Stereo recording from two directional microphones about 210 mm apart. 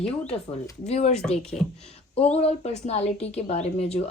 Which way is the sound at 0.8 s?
30° left (ahead or behind).